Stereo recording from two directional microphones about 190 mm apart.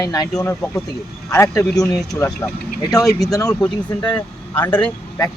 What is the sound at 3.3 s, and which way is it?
Speech, 20° left (ahead or behind).